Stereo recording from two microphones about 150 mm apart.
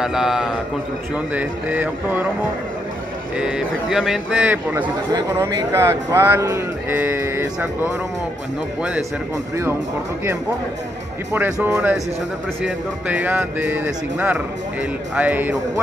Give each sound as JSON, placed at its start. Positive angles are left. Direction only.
{"t": 0.0, "sound": "a man's voice", "side_deg": -5}
{"t": 3.3, "sound": "speech", "side_deg": -5}
{"t": 5.1, "sound": "speech", "side_deg": -20}
{"t": 11.3, "sound": "speech", "side_deg": -10}